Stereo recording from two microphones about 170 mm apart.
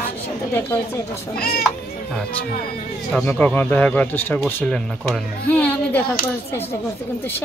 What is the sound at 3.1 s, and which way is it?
Speech, 5° left (ahead or behind).